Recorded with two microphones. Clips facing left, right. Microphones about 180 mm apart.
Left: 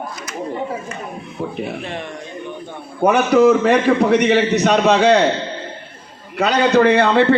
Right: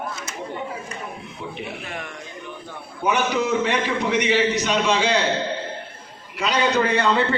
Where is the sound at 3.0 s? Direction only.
55° left (ahead or behind).